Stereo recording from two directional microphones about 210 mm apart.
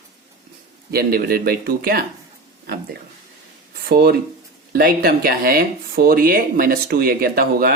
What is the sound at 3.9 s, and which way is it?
Speech, 50° right (ahead or behind).